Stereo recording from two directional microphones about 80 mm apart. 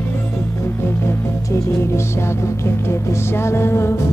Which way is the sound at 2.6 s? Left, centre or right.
Left.